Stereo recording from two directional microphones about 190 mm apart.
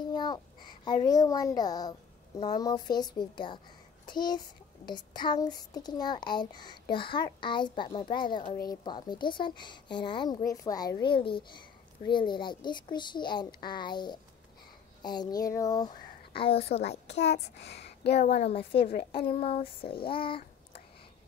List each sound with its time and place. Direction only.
0.1 s a sound: 25° left (ahead or behind)
1.0 s a child's voice: 20° left (ahead or behind)
17.2 s a child's voice: 60° left (ahead or behind)
18.3 s a woman's voice: 35° left (ahead or behind)